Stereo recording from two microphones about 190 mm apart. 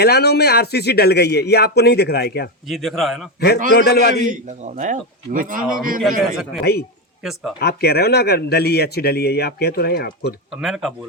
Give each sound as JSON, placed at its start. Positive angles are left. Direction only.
{"t": 0.0, "sound": "speech", "side_deg": 55}
{"t": 2.6, "sound": "a man's voice", "side_deg": 0}
{"t": 3.7, "sound": "speech", "side_deg": 60}
{"t": 4.2, "sound": "speech", "side_deg": -40}
{"t": 6.0, "sound": "a man's voice", "side_deg": 0}
{"t": 7.6, "sound": "speech", "side_deg": 55}
{"t": 10.5, "sound": "a man's voice", "side_deg": 0}